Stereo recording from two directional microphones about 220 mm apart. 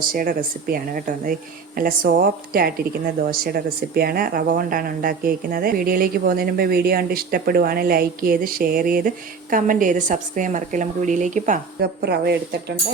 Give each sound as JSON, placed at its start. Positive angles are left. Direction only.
{"t": 0.1, "sound": "speech", "side_deg": -40}